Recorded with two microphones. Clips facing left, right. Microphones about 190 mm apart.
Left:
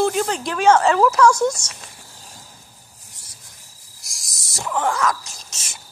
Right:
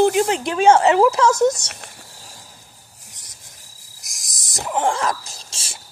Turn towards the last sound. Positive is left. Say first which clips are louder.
# right 1 dB
turn(degrees=-30)  # may be behind; listen again after turning